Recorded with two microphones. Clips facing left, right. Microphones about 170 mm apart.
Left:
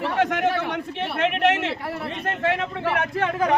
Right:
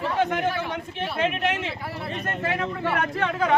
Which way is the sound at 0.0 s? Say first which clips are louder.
Left 2 dB; 80° left.